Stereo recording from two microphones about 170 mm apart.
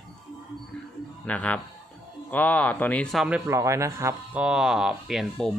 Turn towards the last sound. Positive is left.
turn(degrees=0)  # may be behind; listen again after turning